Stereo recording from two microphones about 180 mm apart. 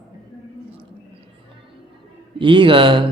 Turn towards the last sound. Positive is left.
turn(degrees=-30)  # may be behind; listen again after turning